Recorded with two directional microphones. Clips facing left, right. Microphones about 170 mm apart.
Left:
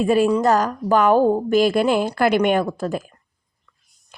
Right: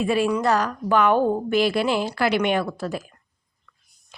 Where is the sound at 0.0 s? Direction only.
45° left (ahead or behind).